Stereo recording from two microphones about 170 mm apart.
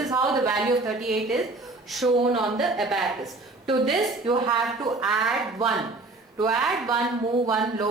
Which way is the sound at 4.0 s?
30° right (ahead or behind).